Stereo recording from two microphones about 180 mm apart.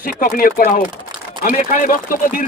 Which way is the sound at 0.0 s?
50° left (ahead or behind).